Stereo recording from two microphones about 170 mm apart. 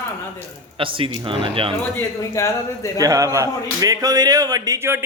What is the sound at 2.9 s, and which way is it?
A man's voice, 20° right (ahead or behind).